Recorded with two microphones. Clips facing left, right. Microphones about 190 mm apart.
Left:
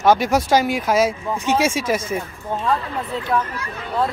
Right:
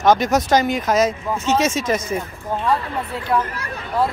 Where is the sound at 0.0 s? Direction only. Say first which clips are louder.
Even; 10° left (ahead or behind).